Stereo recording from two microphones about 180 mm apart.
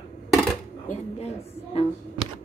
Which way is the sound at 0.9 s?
35° left (ahead or behind).